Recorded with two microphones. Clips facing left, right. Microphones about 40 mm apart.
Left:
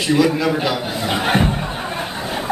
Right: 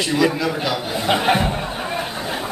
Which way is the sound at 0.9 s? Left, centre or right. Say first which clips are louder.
Right 3 dB; centre.